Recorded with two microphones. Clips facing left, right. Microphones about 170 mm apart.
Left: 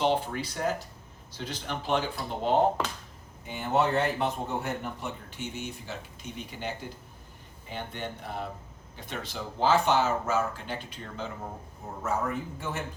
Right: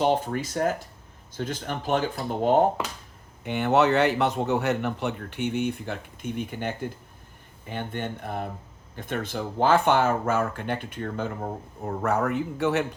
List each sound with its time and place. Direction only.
0.0 s speech: 45° right (ahead or behind)
3.4 s a man's voice: 70° right (ahead or behind)